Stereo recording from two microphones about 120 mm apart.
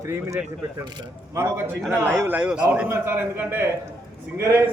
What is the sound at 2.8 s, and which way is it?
Speech, 20° right (ahead or behind).